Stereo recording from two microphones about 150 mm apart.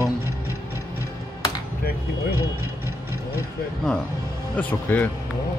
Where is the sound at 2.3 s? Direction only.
20° right (ahead or behind).